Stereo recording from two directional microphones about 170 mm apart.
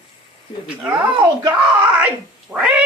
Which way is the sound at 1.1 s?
20° right (ahead or behind).